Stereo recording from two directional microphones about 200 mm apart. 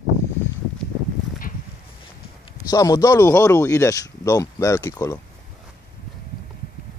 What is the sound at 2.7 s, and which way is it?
Speech, 15° left (ahead or behind).